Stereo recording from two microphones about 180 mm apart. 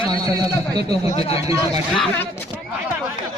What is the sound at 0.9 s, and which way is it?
Speech, 30° left (ahead or behind).